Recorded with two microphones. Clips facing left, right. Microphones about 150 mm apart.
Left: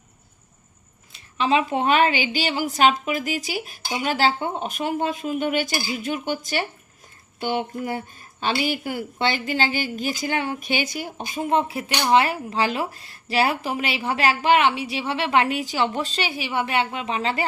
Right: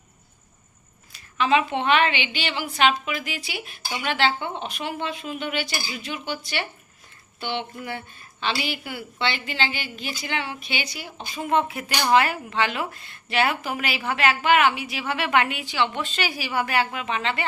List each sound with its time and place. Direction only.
1.1 s a woman's voice: 35° left (ahead or behind)
11.4 s a woman's voice: 30° left (ahead or behind)